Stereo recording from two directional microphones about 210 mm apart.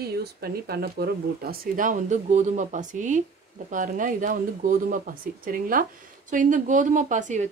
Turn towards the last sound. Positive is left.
turn(degrees=-35)  # may be behind; listen again after turning